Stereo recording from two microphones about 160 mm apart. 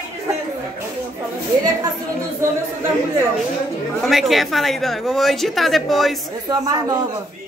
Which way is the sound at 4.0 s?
Centre (ahead or behind).